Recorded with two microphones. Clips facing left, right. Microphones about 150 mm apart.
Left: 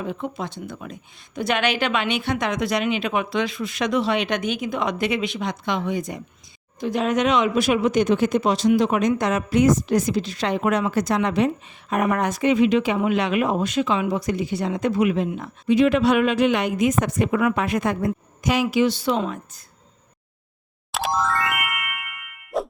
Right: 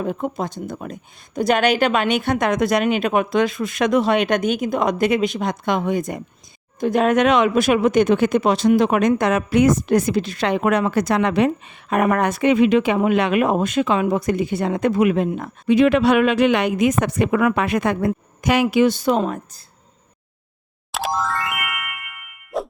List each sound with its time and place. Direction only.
0.0 s a woman's voice: 45° right (ahead or behind)
15.4 s speech: 65° right (ahead or behind); by 19.6 s 45° right (ahead or behind)
20.9 s music: centre (ahead or behind)
22.5 s clang: centre (ahead or behind)